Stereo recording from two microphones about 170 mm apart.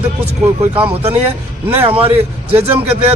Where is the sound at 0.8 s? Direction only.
35° right (ahead or behind).